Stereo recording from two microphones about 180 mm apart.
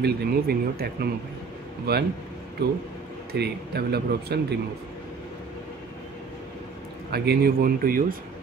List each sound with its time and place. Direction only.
0.0 s speech: 60° right (ahead or behind)
1.9 s speech: 60° right (ahead or behind)
7.1 s speech: 60° right (ahead or behind)